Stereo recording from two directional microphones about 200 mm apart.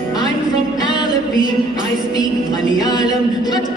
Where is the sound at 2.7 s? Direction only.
20° left (ahead or behind).